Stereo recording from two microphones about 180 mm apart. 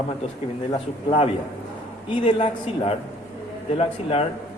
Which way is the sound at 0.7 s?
30° left (ahead or behind).